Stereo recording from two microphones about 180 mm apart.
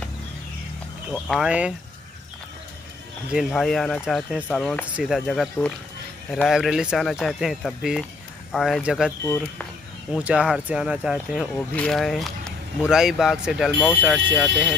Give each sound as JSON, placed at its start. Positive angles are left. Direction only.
{"t": 1.1, "sound": "speech", "side_deg": 0}
{"t": 3.3, "sound": "speech", "side_deg": 0}
{"t": 9.2, "sound": "speech", "side_deg": 15}
{"t": 10.1, "sound": "speech", "side_deg": -5}
{"t": 11.3, "sound": "speech", "side_deg": 5}